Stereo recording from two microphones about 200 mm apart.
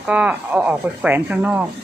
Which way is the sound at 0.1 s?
5° right (ahead or behind).